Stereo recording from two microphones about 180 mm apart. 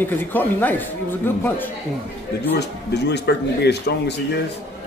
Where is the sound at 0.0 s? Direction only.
10° left (ahead or behind).